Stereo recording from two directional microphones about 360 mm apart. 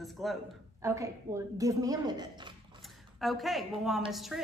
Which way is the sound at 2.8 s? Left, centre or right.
Centre.